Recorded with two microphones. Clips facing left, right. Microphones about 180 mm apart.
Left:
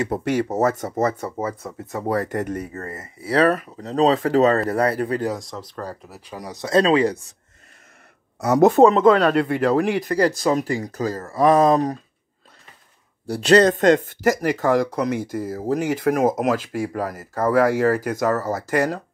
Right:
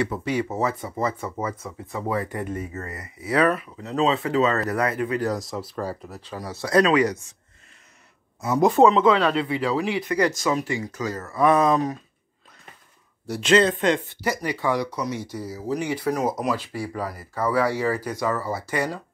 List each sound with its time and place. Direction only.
0.1 s speech: 65° left (ahead or behind)
0.4 s speech: 45° left (ahead or behind)
2.7 s speech: 30° left (ahead or behind)
5.3 s speech: 5° right (ahead or behind)
6.0 s speech: 5° left (ahead or behind)
6.3 s speech: 15° left (ahead or behind)
8.4 s speech: 75° left (ahead or behind)
8.6 s speech: 45° left (ahead or behind)
13.3 s speech: 35° left (ahead or behind)